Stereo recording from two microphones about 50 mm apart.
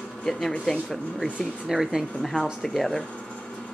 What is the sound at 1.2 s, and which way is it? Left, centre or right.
Speech, left.